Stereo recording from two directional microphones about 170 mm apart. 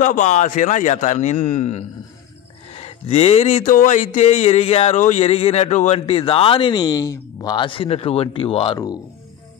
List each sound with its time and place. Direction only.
0.0 s speech: 45° left (ahead or behind)